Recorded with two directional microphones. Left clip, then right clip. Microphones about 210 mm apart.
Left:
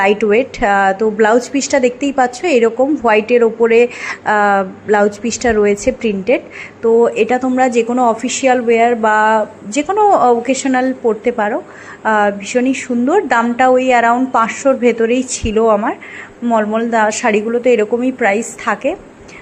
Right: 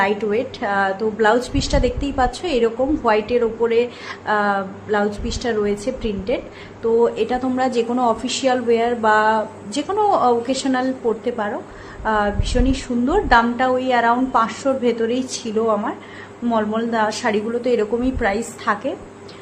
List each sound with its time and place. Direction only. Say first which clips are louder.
0.0 s a woman's voice: left 7 dB; 30° left (ahead or behind)
7.3 s a woman's voice: left 7 dB; 20° left (ahead or behind)